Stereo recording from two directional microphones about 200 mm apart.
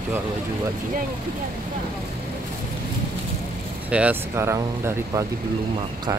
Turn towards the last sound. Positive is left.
turn(degrees=-15)  # may be behind; listen again after turning